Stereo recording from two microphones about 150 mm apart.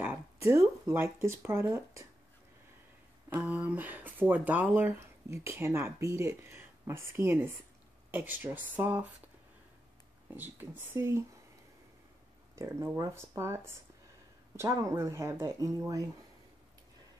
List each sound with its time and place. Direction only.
0.0 s speech: 15° right (ahead or behind)
3.3 s speech: 10° right (ahead or behind)
10.3 s speech: 10° right (ahead or behind)
12.5 s speech: 20° right (ahead or behind)